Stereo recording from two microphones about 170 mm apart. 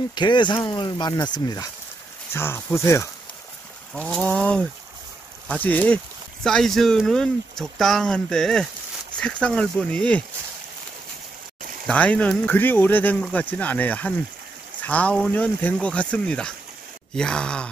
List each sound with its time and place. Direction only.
0.1 s speech: 25° left (ahead or behind); by 10.2 s 5° left (ahead or behind)
11.9 s speech: 10° left (ahead or behind)